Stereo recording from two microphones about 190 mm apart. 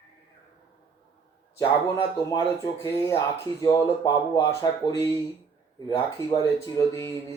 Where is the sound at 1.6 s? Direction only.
20° left (ahead or behind).